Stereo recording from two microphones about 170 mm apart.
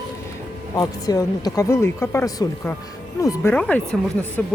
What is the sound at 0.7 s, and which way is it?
Speech, 20° left (ahead or behind).